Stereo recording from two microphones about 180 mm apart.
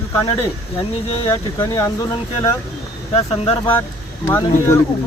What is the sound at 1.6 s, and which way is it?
Speech, 15° left (ahead or behind).